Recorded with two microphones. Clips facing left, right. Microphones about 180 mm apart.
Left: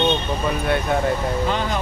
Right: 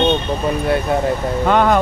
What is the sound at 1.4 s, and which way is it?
Speech, 60° right (ahead or behind).